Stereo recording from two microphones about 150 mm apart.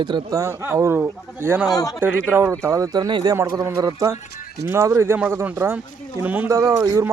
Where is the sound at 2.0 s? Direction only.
15° right (ahead or behind).